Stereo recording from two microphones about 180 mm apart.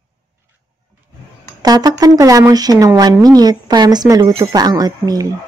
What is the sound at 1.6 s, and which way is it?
Speech, 20° right (ahead or behind).